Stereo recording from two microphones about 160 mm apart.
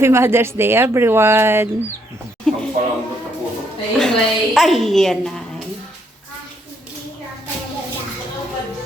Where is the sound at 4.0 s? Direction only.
Centre (ahead or behind).